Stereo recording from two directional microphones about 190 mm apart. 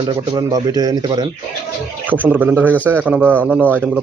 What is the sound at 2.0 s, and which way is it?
A man's voice, 10° right (ahead or behind).